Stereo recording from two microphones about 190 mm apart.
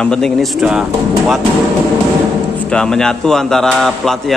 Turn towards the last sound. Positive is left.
turn(degrees=0)  # may be behind; listen again after turning